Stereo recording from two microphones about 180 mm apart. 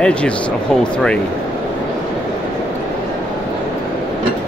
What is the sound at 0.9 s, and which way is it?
Speech, 5° left (ahead or behind).